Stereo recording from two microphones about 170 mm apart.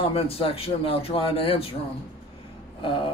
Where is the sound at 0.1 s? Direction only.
35° left (ahead or behind).